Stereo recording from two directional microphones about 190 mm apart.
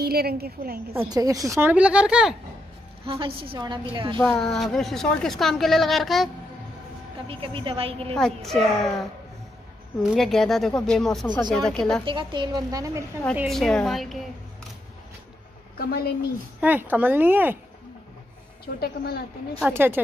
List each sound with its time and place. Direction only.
0.0 s a woman's voice: 55° right (ahead or behind)
1.1 s speech: 20° right (ahead or behind)
3.1 s a woman's voice: 30° right (ahead or behind)
4.2 s a woman's voice: 5° left (ahead or behind)
7.2 s a woman's voice: 30° right (ahead or behind)
8.1 s a woman's voice: 5° left (ahead or behind)
10.0 s a woman's voice: centre (ahead or behind)
12.0 s a woman's voice: 25° right (ahead or behind)
13.4 s a woman's voice: centre (ahead or behind)
15.8 s a woman's voice: 55° left (ahead or behind)
16.6 s speech: 10° right (ahead or behind)
18.8 s a woman's voice: 55° left (ahead or behind)
19.7 s speech: 10° right (ahead or behind)